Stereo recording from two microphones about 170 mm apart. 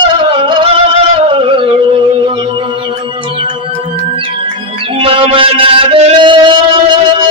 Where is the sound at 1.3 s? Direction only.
30° right (ahead or behind).